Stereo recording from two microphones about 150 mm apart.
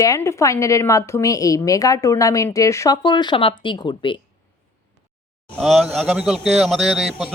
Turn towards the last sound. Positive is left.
turn(degrees=-5)  # may be behind; listen again after turning